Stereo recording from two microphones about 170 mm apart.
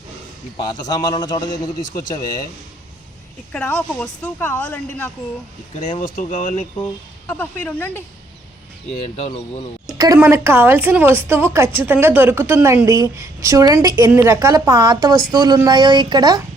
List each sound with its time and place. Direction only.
0.5 s a man's voice: 25° left (ahead or behind)
3.5 s speech: 5° left (ahead or behind)
6.0 s speech: 50° left (ahead or behind)
7.3 s speech: 10° left (ahead or behind)
9.0 s speech: 35° left (ahead or behind)
10.0 s a woman's voice: 15° right (ahead or behind)